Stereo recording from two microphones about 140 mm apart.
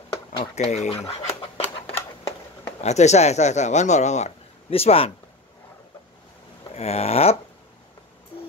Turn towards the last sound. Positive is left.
turn(degrees=45)  # may be behind; listen again after turning